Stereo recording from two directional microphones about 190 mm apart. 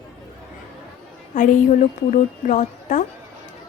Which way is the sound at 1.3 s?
40° left (ahead or behind).